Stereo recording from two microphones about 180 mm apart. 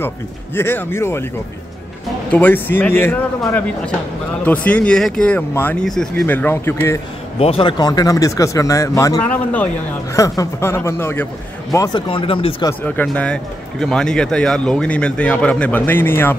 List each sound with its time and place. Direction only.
0.6 s speech: 10° left (ahead or behind)
2.3 s speech: 10° left (ahead or behind)
7.3 s speech: 35° left (ahead or behind); by 9.7 s 10° left (ahead or behind)
10.1 s speech: 20° left (ahead or behind)
12.8 s speech: 5° left (ahead or behind)